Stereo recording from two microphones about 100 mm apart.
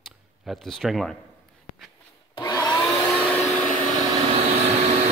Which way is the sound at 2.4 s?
40° left (ahead or behind).